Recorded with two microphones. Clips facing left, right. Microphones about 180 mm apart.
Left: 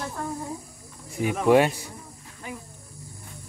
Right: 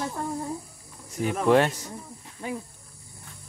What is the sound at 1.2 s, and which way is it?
Speech, 10° left (ahead or behind).